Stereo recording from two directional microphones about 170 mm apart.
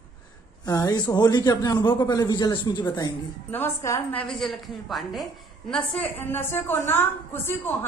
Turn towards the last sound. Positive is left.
turn(degrees=15)  # may be behind; listen again after turning